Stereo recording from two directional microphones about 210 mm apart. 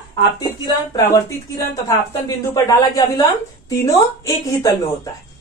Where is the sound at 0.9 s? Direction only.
15° left (ahead or behind).